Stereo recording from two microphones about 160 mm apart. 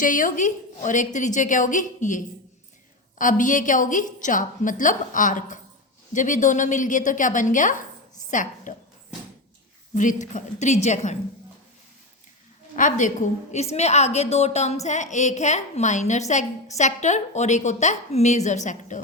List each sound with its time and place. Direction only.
0.0 s a woman's voice: 55° left (ahead or behind)
9.9 s a woman's voice: 50° left (ahead or behind)
12.7 s a woman's voice: 55° left (ahead or behind)